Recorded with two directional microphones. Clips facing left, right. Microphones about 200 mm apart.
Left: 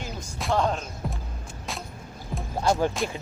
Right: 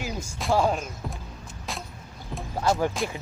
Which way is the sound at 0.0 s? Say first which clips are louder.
Right 2 dB; 5° right (ahead or behind).